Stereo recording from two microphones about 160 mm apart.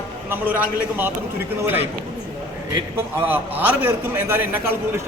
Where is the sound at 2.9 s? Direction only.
10° right (ahead or behind).